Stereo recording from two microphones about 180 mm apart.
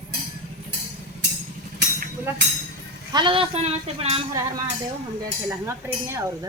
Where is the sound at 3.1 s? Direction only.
30° right (ahead or behind).